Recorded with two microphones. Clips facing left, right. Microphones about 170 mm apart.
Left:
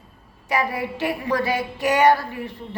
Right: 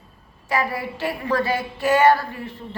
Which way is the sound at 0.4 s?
20° left (ahead or behind).